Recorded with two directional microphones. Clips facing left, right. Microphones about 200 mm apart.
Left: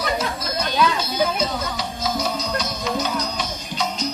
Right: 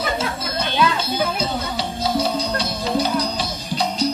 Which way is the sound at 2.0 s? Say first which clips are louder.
Right 4 dB; 30° right (ahead or behind).